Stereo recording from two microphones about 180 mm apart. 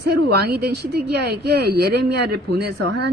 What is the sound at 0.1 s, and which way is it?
Speech, 65° right (ahead or behind).